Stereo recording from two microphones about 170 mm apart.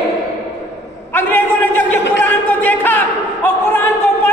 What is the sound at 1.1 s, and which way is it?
Speech, 10° left (ahead or behind).